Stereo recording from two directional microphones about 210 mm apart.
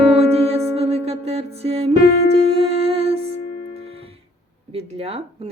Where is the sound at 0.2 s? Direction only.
30° right (ahead or behind).